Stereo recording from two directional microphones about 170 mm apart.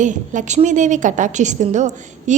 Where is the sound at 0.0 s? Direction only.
45° right (ahead or behind).